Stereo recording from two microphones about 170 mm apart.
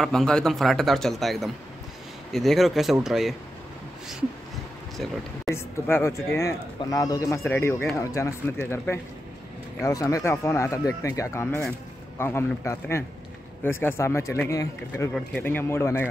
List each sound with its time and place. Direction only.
0.0 s speech: 5° left (ahead or behind)
5.5 s speech: 15° left (ahead or behind)